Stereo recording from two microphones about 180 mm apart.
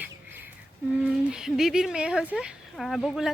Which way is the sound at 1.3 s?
5° right (ahead or behind).